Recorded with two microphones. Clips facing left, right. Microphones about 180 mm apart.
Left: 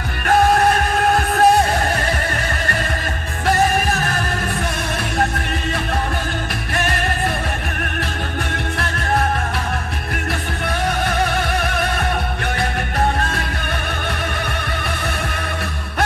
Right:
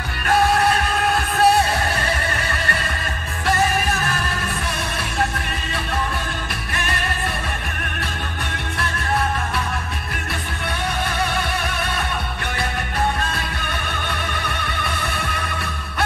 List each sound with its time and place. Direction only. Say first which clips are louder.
0.3 s music: left 3 dB; 45° left (ahead or behind)